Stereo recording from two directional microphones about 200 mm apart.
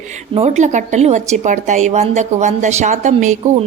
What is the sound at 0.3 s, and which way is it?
A woman's voice, 35° right (ahead or behind).